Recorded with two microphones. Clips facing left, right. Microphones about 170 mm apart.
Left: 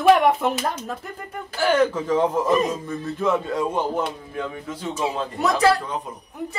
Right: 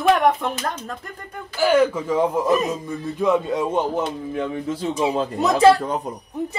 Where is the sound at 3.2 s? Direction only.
15° right (ahead or behind).